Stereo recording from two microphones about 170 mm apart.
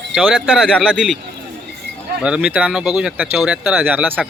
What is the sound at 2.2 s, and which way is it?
Speech, 5° right (ahead or behind).